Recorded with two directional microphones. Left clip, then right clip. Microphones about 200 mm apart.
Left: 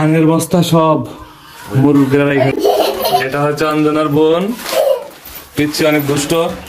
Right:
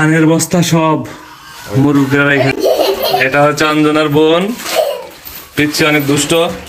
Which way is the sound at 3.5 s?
5° right (ahead or behind).